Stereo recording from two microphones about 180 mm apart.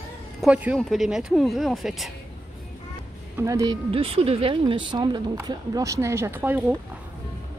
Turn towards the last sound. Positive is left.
turn(degrees=-10)  # may be behind; listen again after turning